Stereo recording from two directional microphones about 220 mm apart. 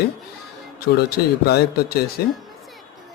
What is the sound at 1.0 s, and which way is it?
Speech, 45° left (ahead or behind).